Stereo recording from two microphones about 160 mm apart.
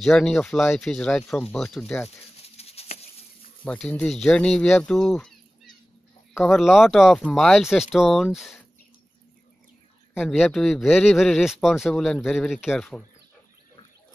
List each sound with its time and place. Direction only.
0.0 s speech: centre (ahead or behind)
2.0 s a sound: 40° left (ahead or behind)
3.6 s speech: 10° left (ahead or behind)
6.5 s speech: centre (ahead or behind)
10.2 s speech: centre (ahead or behind)